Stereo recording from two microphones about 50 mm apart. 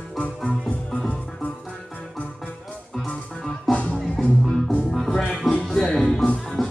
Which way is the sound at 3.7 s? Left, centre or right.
Left.